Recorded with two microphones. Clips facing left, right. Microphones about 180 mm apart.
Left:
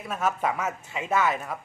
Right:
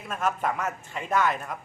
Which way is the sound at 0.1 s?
5° left (ahead or behind).